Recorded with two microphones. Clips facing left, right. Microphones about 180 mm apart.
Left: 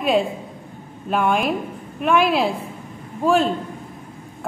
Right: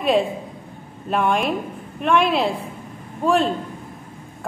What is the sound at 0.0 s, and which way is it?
A man's voice, centre (ahead or behind).